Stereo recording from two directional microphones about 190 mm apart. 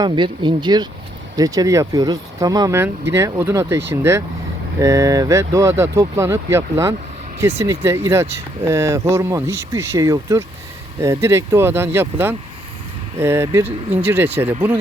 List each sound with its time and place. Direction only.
0.0 s speech: 25° right (ahead or behind)